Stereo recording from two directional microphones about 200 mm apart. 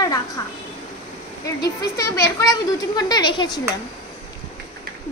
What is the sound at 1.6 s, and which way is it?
A child's voice, 15° left (ahead or behind).